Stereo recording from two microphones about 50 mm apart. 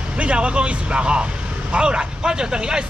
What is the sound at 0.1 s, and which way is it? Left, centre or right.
Speech, right.